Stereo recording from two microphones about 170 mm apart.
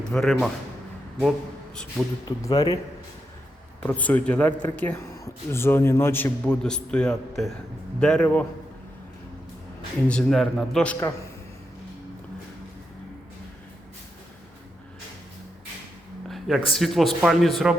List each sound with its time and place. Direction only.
0.0 s speech: 5° left (ahead or behind)
1.7 s speech: 5° left (ahead or behind)
2.2 s speech: 20° left (ahead or behind)
3.8 s speech: 10° left (ahead or behind)
10.1 s speech: 5° left (ahead or behind)
16.3 s speech: centre (ahead or behind)